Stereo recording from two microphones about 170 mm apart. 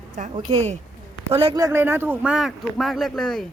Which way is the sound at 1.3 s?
35° right (ahead or behind).